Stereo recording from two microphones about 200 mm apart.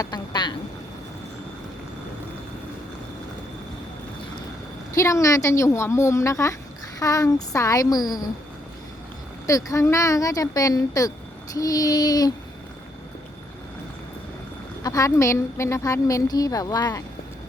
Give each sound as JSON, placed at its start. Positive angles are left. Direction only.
{"t": 0.0, "sound": "child singing", "side_deg": 20}
{"t": 4.9, "sound": "a woman's voice", "side_deg": 15}
{"t": 9.5, "sound": "a woman's voice", "side_deg": 15}
{"t": 11.5, "sound": "child singing", "side_deg": 15}
{"t": 14.8, "sound": "a woman's voice", "side_deg": 15}